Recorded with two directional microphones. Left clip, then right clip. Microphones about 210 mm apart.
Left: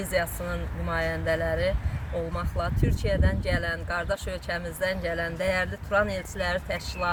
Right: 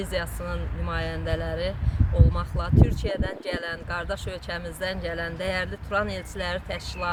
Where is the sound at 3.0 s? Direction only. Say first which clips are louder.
Left 1 dB; 20° right (ahead or behind).